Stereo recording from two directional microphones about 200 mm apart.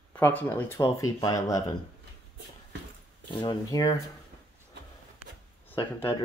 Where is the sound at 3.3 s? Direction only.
20° left (ahead or behind).